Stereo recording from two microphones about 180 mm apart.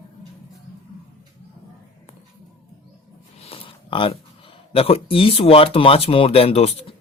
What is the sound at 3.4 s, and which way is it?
Speech, 30° left (ahead or behind).